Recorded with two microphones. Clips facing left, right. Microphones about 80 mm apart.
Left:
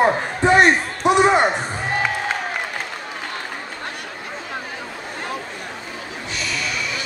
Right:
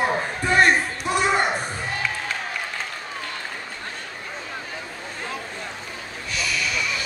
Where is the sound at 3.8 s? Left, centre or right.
Left.